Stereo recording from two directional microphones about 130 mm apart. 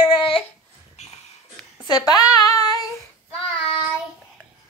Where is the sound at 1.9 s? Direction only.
30° left (ahead or behind).